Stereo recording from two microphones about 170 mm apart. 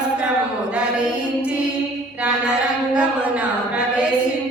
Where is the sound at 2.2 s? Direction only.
5° right (ahead or behind).